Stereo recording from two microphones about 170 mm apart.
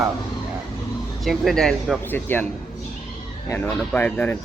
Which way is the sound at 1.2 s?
Centre (ahead or behind).